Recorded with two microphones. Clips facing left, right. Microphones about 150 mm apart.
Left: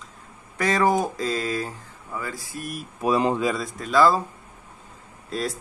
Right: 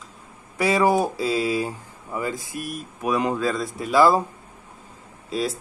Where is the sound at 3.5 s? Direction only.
10° right (ahead or behind).